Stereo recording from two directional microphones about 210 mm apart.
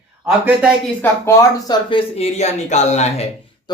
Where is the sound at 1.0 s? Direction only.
15° left (ahead or behind); by 3.2 s 30° left (ahead or behind).